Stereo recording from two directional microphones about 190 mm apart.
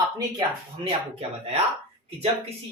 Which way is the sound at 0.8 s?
30° right (ahead or behind).